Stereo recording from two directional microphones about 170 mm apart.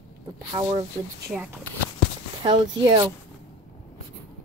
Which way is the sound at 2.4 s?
25° right (ahead or behind).